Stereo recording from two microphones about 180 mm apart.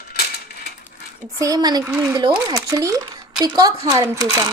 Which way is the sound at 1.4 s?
20° right (ahead or behind).